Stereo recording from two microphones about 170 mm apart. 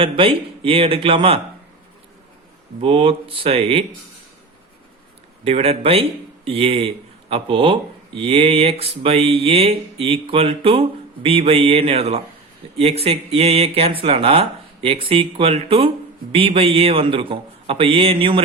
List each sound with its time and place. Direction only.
0.0 s speech: 30° right (ahead or behind)
2.8 s speech: 30° right (ahead or behind)
5.5 s speech: 35° right (ahead or behind)